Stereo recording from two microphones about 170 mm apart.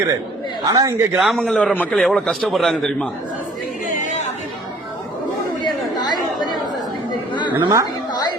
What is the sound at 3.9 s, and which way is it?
Chatter, 45° left (ahead or behind).